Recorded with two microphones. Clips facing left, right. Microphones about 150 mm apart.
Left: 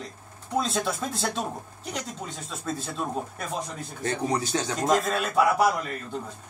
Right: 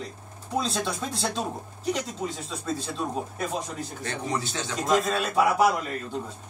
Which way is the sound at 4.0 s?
40° left (ahead or behind).